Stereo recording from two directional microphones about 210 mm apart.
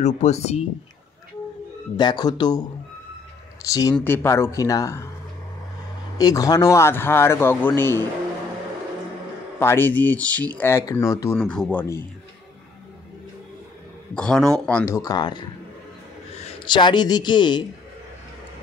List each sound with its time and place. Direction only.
0.0 s speech: 35° left (ahead or behind)
2.0 s speech: 20° left (ahead or behind)
3.6 s speech: 15° left (ahead or behind)
6.1 s speech: 15° left (ahead or behind)
9.6 s speech: 10° left (ahead or behind)
11.3 s speech: 5° left (ahead or behind)
14.1 s speech: 5° left (ahead or behind); by 15.4 s 20° left (ahead or behind)
16.4 s speech: 20° left (ahead or behind)